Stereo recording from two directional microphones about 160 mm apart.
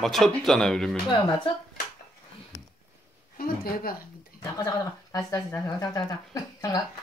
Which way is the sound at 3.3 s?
70° left (ahead or behind).